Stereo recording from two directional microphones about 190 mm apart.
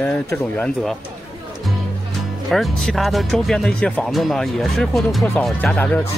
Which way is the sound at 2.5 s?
Centre (ahead or behind).